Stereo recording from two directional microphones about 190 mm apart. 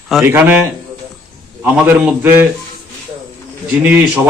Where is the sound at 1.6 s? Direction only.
10° right (ahead or behind).